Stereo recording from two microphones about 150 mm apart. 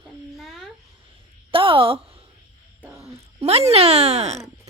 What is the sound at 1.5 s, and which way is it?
Speech, 35° right (ahead or behind).